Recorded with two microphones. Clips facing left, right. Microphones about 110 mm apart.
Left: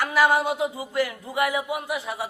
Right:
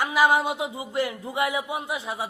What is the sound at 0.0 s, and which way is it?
Speech, 15° right (ahead or behind).